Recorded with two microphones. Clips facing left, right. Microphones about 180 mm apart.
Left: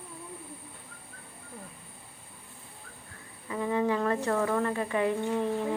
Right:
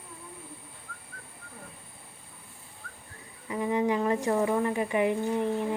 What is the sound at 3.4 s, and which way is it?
Speech, 15° right (ahead or behind).